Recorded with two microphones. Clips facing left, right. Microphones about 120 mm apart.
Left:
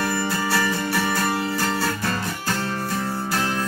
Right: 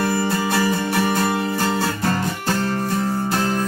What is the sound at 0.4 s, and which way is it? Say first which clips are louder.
Music: right 3 dB; 20° right (ahead or behind).